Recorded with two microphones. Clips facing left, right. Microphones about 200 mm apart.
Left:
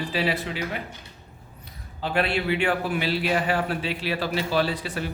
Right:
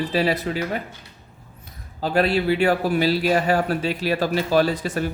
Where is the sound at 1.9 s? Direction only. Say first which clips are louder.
Right 5 dB; 40° right (ahead or behind).